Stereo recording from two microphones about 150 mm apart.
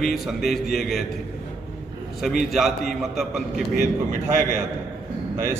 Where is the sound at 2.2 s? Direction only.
Centre (ahead or behind).